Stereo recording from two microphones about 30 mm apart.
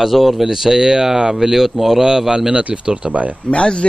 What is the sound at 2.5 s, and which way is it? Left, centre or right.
Speech, right.